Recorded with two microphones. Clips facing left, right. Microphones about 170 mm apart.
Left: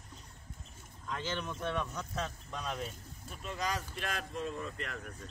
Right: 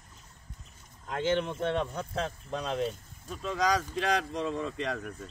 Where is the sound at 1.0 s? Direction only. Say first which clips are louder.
Right 9 dB; 55° right (ahead or behind).